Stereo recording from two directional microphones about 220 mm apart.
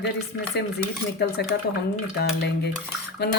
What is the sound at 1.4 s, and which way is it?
Speech, 50° left (ahead or behind).